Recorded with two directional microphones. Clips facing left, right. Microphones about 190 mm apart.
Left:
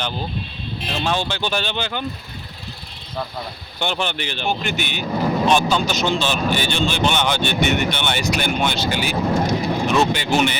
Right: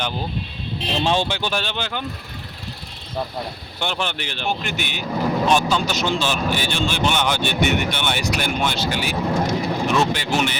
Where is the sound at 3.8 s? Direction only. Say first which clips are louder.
Left 2 dB; centre (ahead or behind).